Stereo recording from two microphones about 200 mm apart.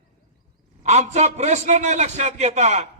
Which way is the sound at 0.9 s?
35° right (ahead or behind).